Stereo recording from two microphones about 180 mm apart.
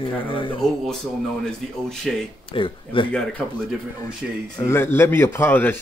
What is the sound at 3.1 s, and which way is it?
Speech, 5° left (ahead or behind).